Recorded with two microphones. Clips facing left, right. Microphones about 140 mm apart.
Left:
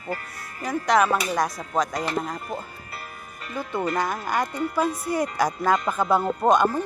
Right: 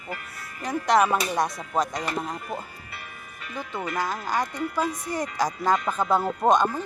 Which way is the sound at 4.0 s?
10° left (ahead or behind).